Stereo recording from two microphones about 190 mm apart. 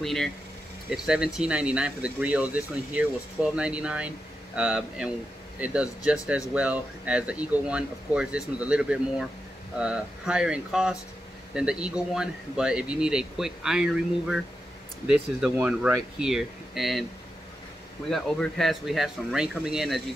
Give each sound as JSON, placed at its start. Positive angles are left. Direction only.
{"t": 0.0, "sound": "a man's voice", "side_deg": 0}
{"t": 15.4, "sound": "a man's voice", "side_deg": -5}
{"t": 18.1, "sound": "a man's voice", "side_deg": 0}